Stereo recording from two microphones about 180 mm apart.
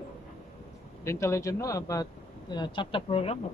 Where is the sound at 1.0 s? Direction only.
15° left (ahead or behind).